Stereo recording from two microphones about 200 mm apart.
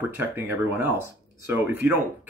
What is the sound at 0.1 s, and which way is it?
Speech, 10° right (ahead or behind).